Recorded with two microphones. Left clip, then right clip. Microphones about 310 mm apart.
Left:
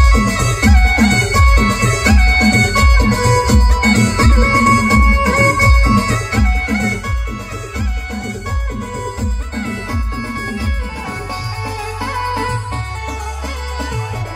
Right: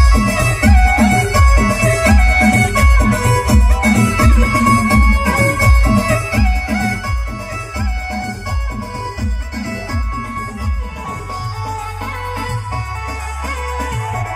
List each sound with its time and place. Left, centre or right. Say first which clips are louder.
0.0 s music: even; centre
12.1 s music: left 7 dB; centre